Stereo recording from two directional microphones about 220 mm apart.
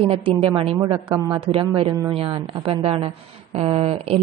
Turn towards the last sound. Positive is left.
turn(degrees=-25)  # may be behind; listen again after turning